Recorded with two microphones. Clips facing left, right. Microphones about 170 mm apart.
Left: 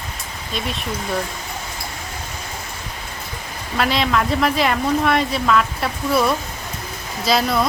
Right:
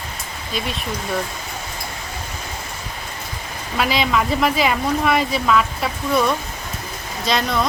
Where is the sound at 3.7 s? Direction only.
Centre (ahead or behind).